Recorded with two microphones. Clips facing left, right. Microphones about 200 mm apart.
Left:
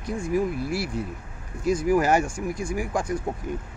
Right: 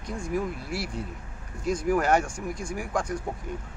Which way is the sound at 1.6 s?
5° left (ahead or behind).